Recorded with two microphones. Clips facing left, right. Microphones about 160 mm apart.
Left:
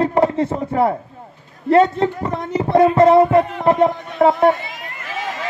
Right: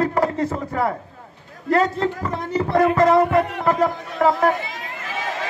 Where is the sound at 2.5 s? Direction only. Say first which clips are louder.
Left 4 dB; 30° left (ahead or behind).